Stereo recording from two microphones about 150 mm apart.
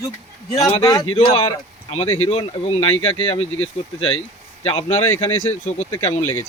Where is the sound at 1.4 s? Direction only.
40° left (ahead or behind).